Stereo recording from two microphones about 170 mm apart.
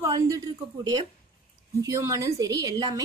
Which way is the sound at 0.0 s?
20° right (ahead or behind).